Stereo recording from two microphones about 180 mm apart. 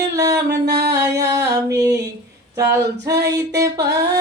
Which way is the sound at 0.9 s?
15° right (ahead or behind).